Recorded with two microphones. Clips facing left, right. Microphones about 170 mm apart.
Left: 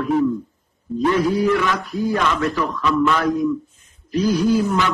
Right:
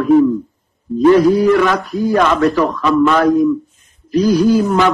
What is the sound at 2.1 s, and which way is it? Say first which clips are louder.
A man's voice: right 10 dB; 60° right (ahead or behind).